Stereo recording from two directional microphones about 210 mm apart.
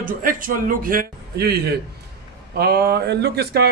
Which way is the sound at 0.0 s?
40° right (ahead or behind).